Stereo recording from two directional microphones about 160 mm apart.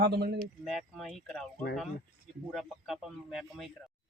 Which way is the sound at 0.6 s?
Centre (ahead or behind).